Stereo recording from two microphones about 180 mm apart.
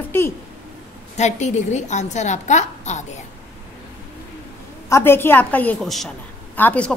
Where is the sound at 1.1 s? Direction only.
40° left (ahead or behind).